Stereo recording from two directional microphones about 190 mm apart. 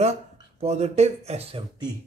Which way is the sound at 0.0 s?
35° right (ahead or behind).